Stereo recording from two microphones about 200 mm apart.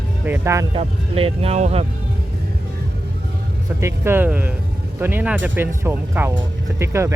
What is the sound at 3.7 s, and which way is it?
Speech, 10° right (ahead or behind).